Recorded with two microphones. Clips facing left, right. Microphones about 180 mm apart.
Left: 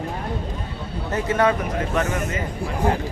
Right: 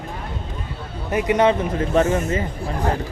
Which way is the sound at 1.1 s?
15° right (ahead or behind).